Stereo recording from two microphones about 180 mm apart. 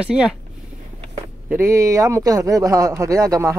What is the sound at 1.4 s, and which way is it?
Speech, 15° right (ahead or behind).